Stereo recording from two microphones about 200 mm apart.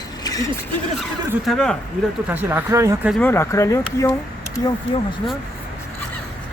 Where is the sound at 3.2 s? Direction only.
15° left (ahead or behind).